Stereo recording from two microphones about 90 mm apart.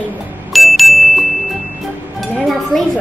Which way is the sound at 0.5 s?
Centre (ahead or behind).